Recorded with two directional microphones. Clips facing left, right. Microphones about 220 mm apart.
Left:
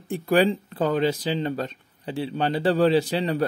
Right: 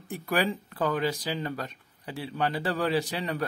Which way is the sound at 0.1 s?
25° left (ahead or behind).